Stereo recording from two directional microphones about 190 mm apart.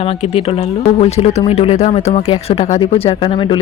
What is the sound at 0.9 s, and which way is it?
Speech, 35° left (ahead or behind).